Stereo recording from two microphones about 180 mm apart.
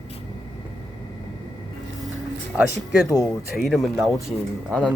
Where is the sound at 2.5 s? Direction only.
5° right (ahead or behind).